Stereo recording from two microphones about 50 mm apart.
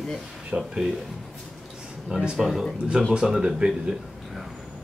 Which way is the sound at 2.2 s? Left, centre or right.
Centre.